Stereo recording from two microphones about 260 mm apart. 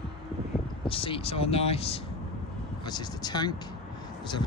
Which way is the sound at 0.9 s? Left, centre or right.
Centre.